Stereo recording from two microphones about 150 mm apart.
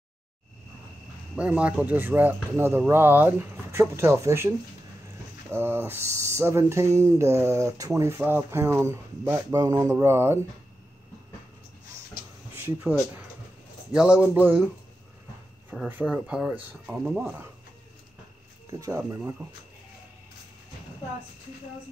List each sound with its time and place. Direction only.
1.3 s speech: 10° right (ahead or behind)
13.9 s speech: 5° right (ahead or behind)
16.0 s speech: 10° right (ahead or behind)
18.7 s speech: 20° right (ahead or behind)